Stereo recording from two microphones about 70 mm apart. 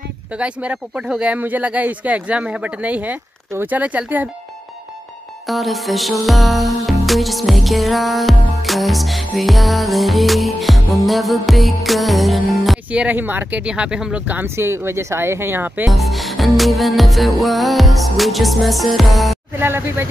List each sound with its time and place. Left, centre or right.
0.3 s speech: centre
1.3 s speech: right
5.5 s music: centre
12.9 s speech: right
14.2 s speech: right
14.5 s speech: right
15.9 s music: centre
19.6 s speech: right